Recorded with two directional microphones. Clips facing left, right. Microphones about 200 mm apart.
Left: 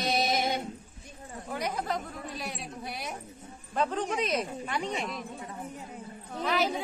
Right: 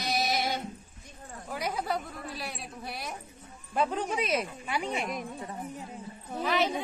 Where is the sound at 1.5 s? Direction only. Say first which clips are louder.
Even; 5° right (ahead or behind).